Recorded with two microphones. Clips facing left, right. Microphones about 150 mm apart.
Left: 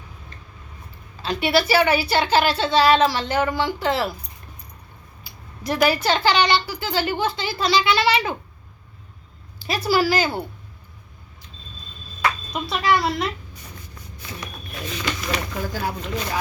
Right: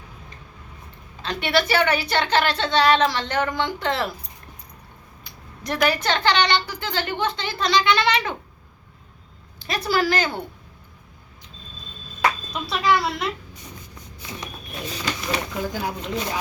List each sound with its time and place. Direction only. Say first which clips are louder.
1.2 s speech: left 2 dB; 5° left (ahead or behind)
5.2 s speech: left 3 dB; 5° left (ahead or behind)
9.6 s speech: left 2 dB; 5° left (ahead or behind)
12.6 s speech: left 1 dB; centre (ahead or behind)
14.8 s speech: left 1 dB; 35° right (ahead or behind)
15.7 s speech: left 1 dB; 15° right (ahead or behind)